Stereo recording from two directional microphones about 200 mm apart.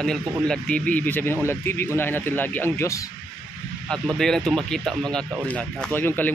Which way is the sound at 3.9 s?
Centre (ahead or behind).